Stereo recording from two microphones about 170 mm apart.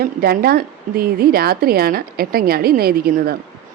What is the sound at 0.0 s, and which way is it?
A woman's voice, 65° right (ahead or behind).